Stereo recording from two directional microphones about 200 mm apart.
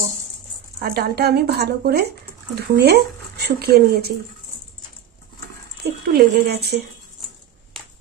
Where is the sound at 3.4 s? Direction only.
50° right (ahead or behind).